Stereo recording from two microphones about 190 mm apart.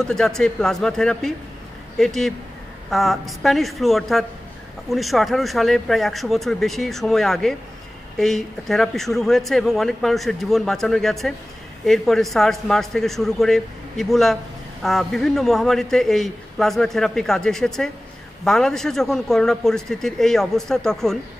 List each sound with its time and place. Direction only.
0.0 s a man's voice: 5° left (ahead or behind)